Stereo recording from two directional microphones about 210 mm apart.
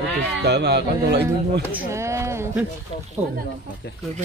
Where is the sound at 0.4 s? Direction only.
55° right (ahead or behind).